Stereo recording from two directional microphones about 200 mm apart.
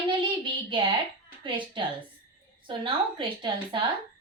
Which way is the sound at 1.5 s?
25° right (ahead or behind).